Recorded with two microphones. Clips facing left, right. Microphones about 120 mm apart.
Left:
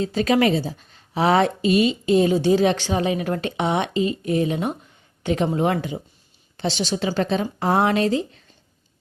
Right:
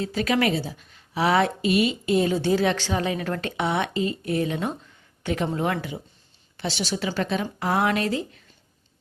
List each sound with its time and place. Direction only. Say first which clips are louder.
0.0 s a woman's voice: left 4 dB; 25° left (ahead or behind)